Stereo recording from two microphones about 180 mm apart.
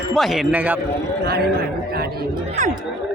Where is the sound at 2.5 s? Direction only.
45° right (ahead or behind).